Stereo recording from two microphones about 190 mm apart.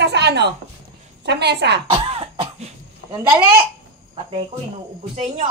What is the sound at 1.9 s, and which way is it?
Cough, 30° right (ahead or behind).